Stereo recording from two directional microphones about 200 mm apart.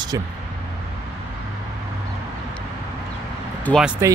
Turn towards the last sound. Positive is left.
turn(degrees=0)  # may be behind; listen again after turning